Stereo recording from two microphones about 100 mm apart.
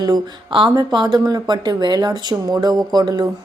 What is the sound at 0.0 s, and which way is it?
A woman's voice, 50° right (ahead or behind).